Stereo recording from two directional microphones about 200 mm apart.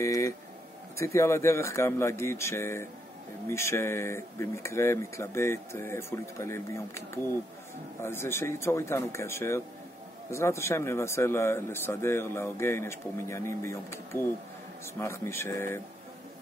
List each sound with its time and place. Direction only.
0.0 s speech: 15° left (ahead or behind)
8.0 s speech: 10° left (ahead or behind)